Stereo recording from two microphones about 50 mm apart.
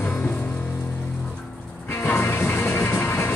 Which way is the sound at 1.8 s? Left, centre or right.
Left.